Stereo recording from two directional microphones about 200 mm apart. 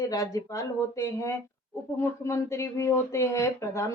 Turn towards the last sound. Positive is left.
turn(degrees=15)  # may be behind; listen again after turning